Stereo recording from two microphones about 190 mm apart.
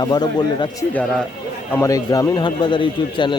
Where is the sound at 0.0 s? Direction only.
20° left (ahead or behind).